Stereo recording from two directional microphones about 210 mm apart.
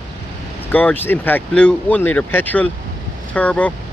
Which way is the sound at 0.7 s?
5° left (ahead or behind).